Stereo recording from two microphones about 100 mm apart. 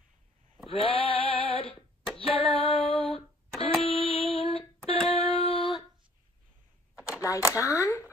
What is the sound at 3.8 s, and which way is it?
Music, 75° left (ahead or behind).